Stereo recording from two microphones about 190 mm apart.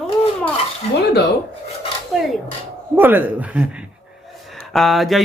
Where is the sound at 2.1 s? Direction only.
Centre (ahead or behind).